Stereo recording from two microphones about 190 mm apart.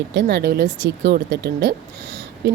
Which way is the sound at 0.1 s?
60° right (ahead or behind).